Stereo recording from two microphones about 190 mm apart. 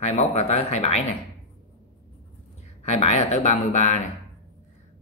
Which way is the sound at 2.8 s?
35° left (ahead or behind).